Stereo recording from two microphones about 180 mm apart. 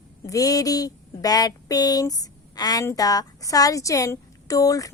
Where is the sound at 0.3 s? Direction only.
20° left (ahead or behind).